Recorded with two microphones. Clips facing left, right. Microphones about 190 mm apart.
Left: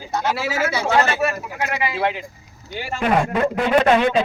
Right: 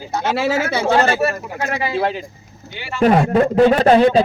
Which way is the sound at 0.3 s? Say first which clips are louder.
Right 4 dB; 65° right (ahead or behind).